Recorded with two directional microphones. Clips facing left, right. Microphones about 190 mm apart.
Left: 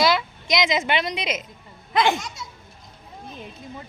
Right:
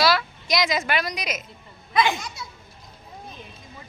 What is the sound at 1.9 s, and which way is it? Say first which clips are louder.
Speech: left 1 dB; 55° left (ahead or behind).